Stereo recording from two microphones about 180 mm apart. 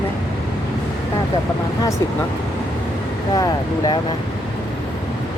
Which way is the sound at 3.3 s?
20° left (ahead or behind).